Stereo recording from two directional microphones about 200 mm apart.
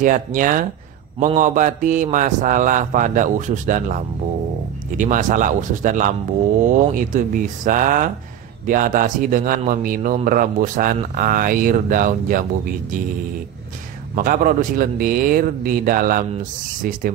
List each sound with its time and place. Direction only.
0.0 s a man's voice: 40° right (ahead or behind)
14.1 s speech: 45° right (ahead or behind)